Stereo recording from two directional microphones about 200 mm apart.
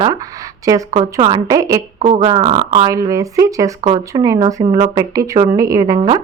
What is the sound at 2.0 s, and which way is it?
A woman's voice, 30° right (ahead or behind).